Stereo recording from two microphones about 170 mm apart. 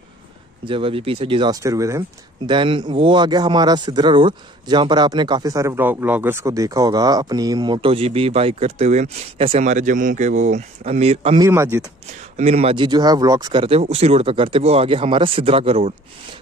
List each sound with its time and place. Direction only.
0.7 s speech: 30° right (ahead or behind)
11.4 s speech: 15° right (ahead or behind)
12.4 s speech: 40° right (ahead or behind)